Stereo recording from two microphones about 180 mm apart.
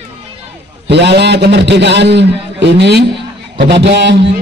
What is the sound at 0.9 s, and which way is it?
A man's voice, 70° right (ahead or behind).